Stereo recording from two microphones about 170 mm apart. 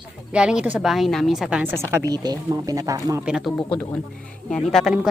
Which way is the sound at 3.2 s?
5° right (ahead or behind).